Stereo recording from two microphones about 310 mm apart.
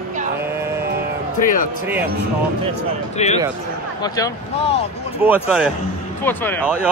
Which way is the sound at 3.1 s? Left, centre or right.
Left.